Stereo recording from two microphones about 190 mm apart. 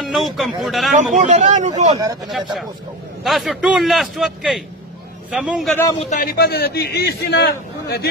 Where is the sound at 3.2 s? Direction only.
Centre (ahead or behind).